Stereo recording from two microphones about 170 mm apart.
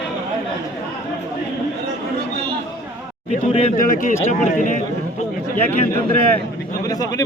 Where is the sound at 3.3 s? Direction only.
40° left (ahead or behind).